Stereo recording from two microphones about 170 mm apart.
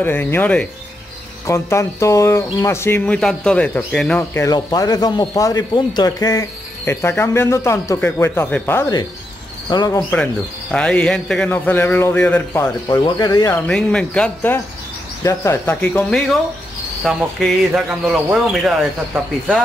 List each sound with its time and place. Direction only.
0.0 s speech: 10° left (ahead or behind)
9.7 s speech: 25° left (ahead or behind)
10.1 s speech: 5° left (ahead or behind)
13.7 s speech: 5° left (ahead or behind)